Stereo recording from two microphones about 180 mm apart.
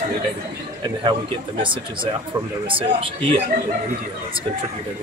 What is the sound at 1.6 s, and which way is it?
Speech, 25° right (ahead or behind).